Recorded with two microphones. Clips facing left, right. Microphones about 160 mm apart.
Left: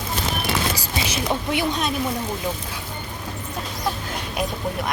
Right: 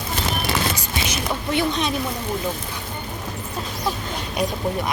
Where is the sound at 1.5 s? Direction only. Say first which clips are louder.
Right 5 dB; 10° left (ahead or behind).